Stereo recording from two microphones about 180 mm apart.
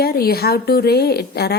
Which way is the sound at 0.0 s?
60° left (ahead or behind).